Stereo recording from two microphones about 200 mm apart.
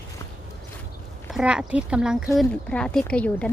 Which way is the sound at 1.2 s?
5° right (ahead or behind).